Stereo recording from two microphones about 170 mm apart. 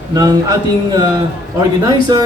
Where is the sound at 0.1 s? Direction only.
20° right (ahead or behind).